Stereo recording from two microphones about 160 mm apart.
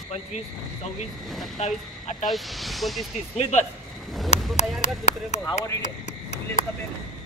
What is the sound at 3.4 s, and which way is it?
Speech, 45° left (ahead or behind).